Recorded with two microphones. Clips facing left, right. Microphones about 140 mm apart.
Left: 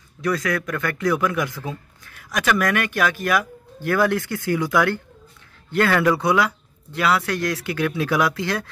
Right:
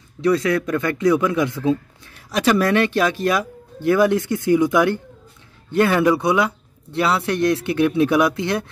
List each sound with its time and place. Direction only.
0.2 s a man's voice: 25° right (ahead or behind)